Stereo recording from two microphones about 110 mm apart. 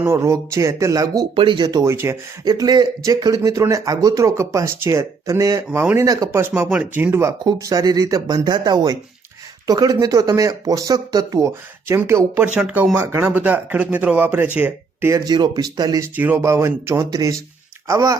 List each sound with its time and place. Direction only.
0.0 s speech: 25° right (ahead or behind)
1.4 s speech: 45° right (ahead or behind)
1.9 s speech: 25° right (ahead or behind)
2.4 s speech: 35° right (ahead or behind)
5.8 s speech: 20° right (ahead or behind)
6.1 s speech: 35° right (ahead or behind)
6.7 s speech: 15° right (ahead or behind)
7.4 s speech: 35° right (ahead or behind); by 15.1 s 15° right (ahead or behind)
15.1 s speech: 35° right (ahead or behind)
16.1 s speech: 15° right (ahead or behind)